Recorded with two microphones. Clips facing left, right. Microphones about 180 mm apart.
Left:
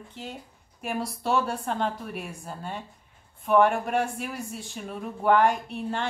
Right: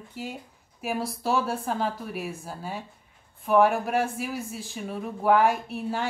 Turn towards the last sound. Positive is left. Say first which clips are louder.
# right 1 dB
turn(degrees=-5)  # may be behind; listen again after turning